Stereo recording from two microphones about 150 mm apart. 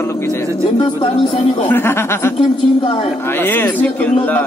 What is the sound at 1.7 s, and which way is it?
Speech, 15° left (ahead or behind).